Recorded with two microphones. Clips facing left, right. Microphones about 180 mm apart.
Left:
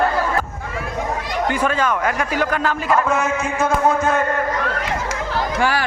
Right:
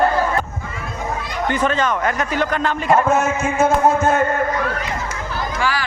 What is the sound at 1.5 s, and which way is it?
A man's voice, 10° left (ahead or behind).